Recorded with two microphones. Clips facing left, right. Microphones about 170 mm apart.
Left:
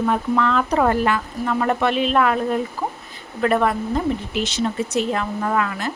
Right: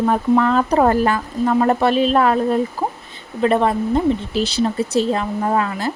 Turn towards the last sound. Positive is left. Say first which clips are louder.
# right 3 dB
turn(degrees=-30)  # may be behind; listen again after turning